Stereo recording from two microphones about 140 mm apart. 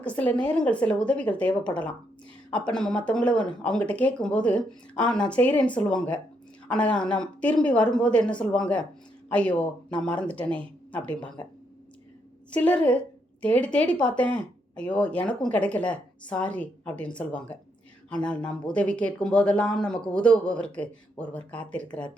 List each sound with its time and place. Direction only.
0.0 s speech: 10° left (ahead or behind)
12.5 s a woman's voice: 10° left (ahead or behind)